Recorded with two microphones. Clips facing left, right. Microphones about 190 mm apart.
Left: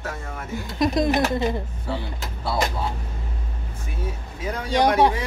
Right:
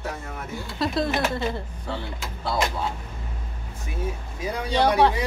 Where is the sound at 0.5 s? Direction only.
15° left (ahead or behind).